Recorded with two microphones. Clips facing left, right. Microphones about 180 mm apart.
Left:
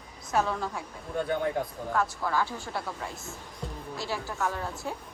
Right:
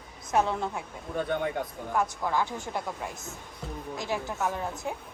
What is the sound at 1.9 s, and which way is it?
Speech, 15° right (ahead or behind).